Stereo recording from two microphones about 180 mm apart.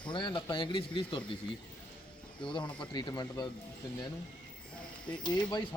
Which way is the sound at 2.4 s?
25° left (ahead or behind).